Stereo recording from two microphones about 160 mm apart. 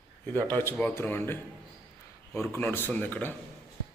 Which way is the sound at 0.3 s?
10° left (ahead or behind).